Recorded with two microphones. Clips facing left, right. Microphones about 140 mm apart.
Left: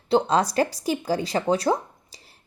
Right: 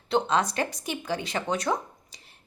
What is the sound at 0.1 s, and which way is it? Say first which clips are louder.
Speech: left 4 dB; 35° left (ahead or behind).